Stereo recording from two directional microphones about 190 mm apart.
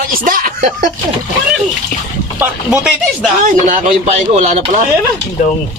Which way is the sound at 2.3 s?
5° right (ahead or behind).